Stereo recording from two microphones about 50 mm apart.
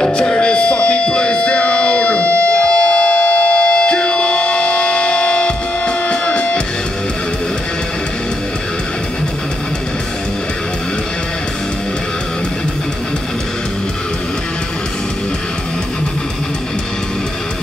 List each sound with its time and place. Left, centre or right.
0.0 s music: centre